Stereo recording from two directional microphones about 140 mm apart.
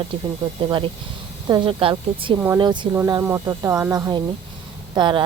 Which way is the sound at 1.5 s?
35° right (ahead or behind).